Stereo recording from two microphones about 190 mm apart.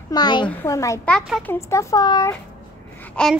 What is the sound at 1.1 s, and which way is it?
Speech, centre (ahead or behind).